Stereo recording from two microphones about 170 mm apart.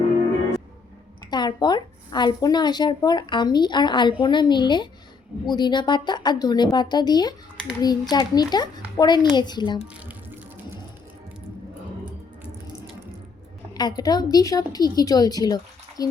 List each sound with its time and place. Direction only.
1.3 s a woman's voice: 25° left (ahead or behind)
9.8 s water: 10° right (ahead or behind)
13.7 s a woman's voice: 25° left (ahead or behind)